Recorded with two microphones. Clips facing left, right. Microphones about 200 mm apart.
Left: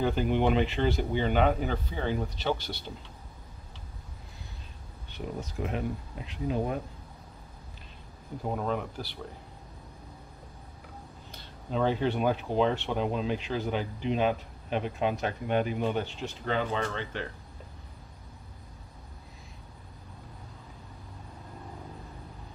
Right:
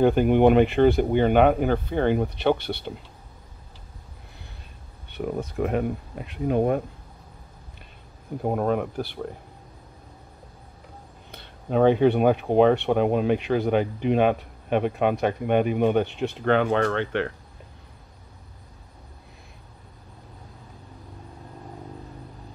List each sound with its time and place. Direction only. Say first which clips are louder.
0.0 s speech: right 9 dB; 55° right (ahead or behind)
5.1 s speech: right 8 dB; 55° right (ahead or behind)
8.4 s speech: right 7 dB; 55° right (ahead or behind)
11.3 s speech: right 8 dB; 60° right (ahead or behind)